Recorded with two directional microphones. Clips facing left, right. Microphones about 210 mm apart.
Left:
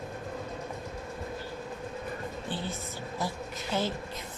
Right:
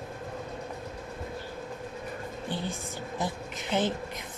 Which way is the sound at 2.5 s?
15° right (ahead or behind).